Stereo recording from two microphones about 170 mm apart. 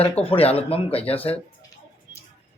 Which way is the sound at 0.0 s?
35° left (ahead or behind).